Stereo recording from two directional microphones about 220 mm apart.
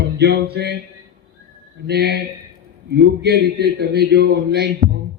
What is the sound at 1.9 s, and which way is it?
A man's voice, 45° right (ahead or behind).